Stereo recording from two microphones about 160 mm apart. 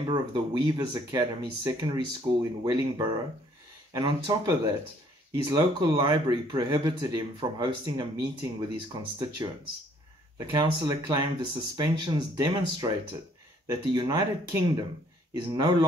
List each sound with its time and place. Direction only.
0.0 s speech: 30° right (ahead or behind)